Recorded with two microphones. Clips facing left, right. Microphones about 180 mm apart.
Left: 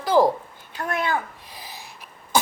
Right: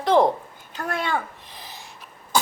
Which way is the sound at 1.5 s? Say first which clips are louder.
Left 3 dB; 10° left (ahead or behind).